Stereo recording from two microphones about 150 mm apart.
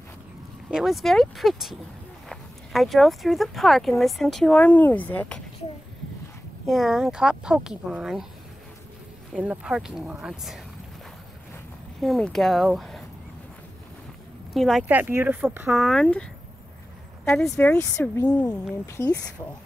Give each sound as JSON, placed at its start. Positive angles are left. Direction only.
{"t": 0.7, "sound": "speech", "side_deg": -5}
{"t": 6.7, "sound": "speech", "side_deg": 0}
{"t": 9.3, "sound": "speech", "side_deg": -5}
{"t": 12.0, "sound": "speech", "side_deg": 0}
{"t": 14.5, "sound": "speech", "side_deg": 0}
{"t": 14.9, "sound": "speech", "side_deg": -15}
{"t": 15.7, "sound": "speech", "side_deg": 0}
{"t": 17.6, "sound": "speech", "side_deg": 15}